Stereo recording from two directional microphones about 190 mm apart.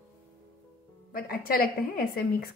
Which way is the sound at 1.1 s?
50° left (ahead or behind).